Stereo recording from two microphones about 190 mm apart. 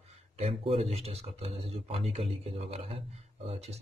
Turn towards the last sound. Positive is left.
turn(degrees=-30)  # may be behind; listen again after turning